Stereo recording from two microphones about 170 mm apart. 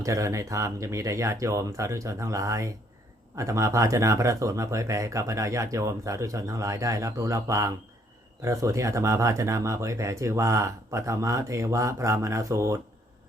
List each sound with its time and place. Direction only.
0.0 s speech: 20° right (ahead or behind)